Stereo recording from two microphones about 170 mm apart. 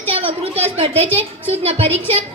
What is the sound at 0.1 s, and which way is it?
A woman's voice, 35° right (ahead or behind).